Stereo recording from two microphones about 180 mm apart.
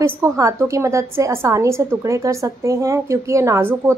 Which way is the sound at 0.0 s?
15° right (ahead or behind).